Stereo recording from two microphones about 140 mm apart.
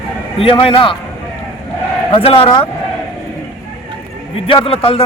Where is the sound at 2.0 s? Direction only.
40° left (ahead or behind).